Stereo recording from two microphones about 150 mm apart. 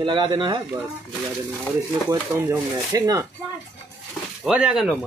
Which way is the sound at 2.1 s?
20° right (ahead or behind).